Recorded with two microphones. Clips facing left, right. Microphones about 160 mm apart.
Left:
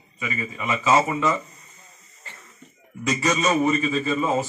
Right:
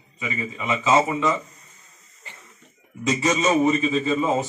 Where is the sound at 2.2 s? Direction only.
15° right (ahead or behind).